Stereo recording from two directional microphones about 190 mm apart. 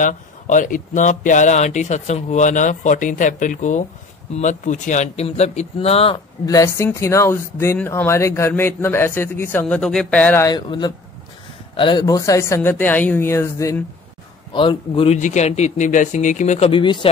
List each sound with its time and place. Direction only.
0.0 s speech: 40° left (ahead or behind); by 13.8 s 15° left (ahead or behind)
14.5 s a man's voice: 25° left (ahead or behind)
15.1 s speech: 40° left (ahead or behind)